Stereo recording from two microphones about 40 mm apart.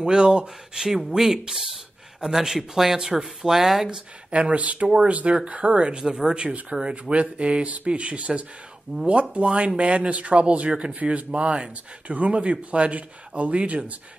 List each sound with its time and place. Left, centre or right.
0.0 s speech: right
0.7 s speech: centre
4.3 s speech: right